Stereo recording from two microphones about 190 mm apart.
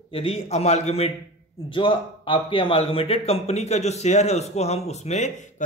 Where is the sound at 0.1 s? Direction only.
30° left (ahead or behind).